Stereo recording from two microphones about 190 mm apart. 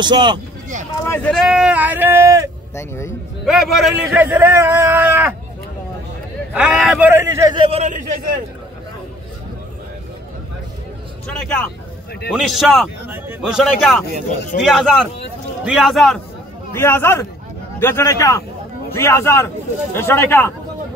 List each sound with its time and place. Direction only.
0.0 s speech: 25° right (ahead or behind)
1.0 s speech: 10° left (ahead or behind)
1.3 s a man's voice: centre (ahead or behind)
2.7 s speech: 15° left (ahead or behind)
3.4 s a man's voice: centre (ahead or behind)
4.1 s a man's voice: 10° right (ahead or behind)
6.5 s a man's voice: 5° right (ahead or behind); by 8.1 s 40° right (ahead or behind)
12.3 s a man's voice: centre (ahead or behind)
14.5 s a man's voice: 45° left (ahead or behind)
15.6 s a man's voice: centre (ahead or behind)
16.7 s speech: 15° left (ahead or behind)